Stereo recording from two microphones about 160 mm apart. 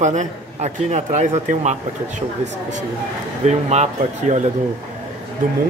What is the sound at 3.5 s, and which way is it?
Speech, 45° right (ahead or behind).